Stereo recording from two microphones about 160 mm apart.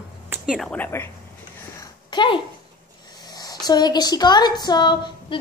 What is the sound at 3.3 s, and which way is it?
A woman's voice, 25° left (ahead or behind).